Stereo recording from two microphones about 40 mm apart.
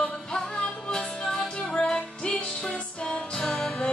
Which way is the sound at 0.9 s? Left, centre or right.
Centre.